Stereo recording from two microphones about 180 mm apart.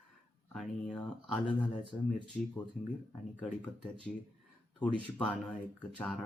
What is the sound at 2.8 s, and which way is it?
Speech, 50° left (ahead or behind).